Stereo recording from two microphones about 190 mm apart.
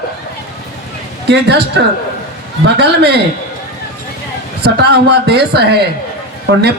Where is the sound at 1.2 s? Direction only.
60° right (ahead or behind).